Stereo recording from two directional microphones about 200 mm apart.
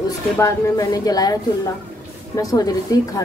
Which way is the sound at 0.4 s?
15° left (ahead or behind).